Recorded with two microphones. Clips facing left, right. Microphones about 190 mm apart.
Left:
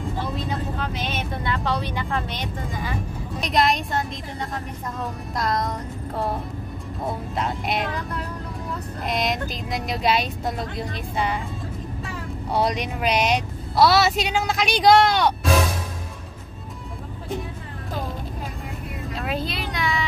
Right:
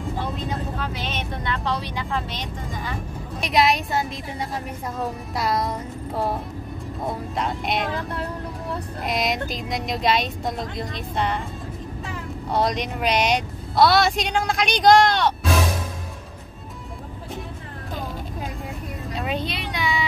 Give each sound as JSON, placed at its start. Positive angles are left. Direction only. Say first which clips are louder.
{"t": 0.9, "sound": "speech", "louder": "left 1 dB", "side_deg": 10}
{"t": 7.9, "sound": "speech", "louder": "right 2 dB", "side_deg": -30}
{"t": 9.0, "sound": "speech", "louder": "even", "side_deg": 0}
{"t": 12.5, "sound": "speech", "louder": "even", "side_deg": 5}
{"t": 19.1, "sound": "a sound", "louder": "right 1 dB", "side_deg": 0}